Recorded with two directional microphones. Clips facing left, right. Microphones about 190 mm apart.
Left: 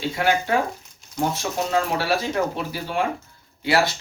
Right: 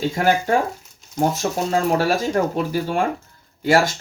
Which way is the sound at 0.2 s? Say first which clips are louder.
Right 2 dB; 45° right (ahead or behind).